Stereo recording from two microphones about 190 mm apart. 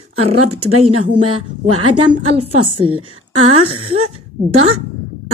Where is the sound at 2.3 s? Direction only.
30° right (ahead or behind).